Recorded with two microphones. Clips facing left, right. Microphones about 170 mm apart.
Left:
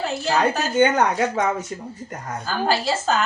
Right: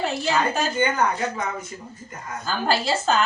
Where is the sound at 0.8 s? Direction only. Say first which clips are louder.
Left 7 dB; 80° left.